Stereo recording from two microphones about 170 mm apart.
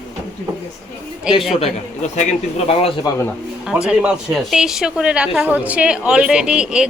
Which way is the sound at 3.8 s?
5° right (ahead or behind).